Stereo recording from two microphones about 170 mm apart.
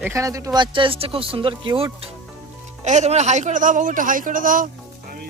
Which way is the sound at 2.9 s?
40° right (ahead or behind).